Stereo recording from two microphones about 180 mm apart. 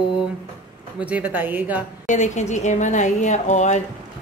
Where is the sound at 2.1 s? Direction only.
40° left (ahead or behind).